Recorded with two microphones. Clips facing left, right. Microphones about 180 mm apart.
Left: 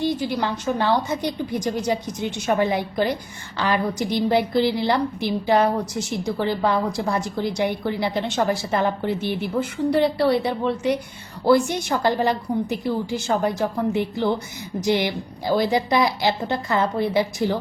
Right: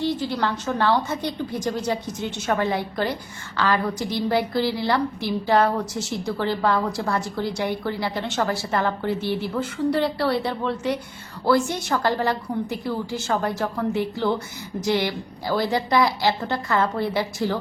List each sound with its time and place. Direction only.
0.0 s a woman's voice: 15° left (ahead or behind)